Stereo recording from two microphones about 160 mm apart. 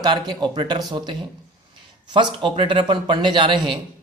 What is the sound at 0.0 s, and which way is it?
Speech, 25° right (ahead or behind).